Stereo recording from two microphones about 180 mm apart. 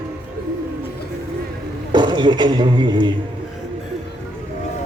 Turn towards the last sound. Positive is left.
turn(degrees=-25)  # may be behind; listen again after turning